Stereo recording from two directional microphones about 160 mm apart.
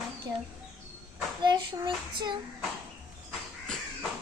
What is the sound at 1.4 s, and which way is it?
Speech, 30° right (ahead or behind).